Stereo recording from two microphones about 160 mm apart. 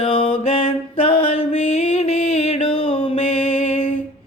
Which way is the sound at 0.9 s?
40° left (ahead or behind).